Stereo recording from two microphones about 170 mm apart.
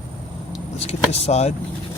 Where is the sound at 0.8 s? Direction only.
40° left (ahead or behind).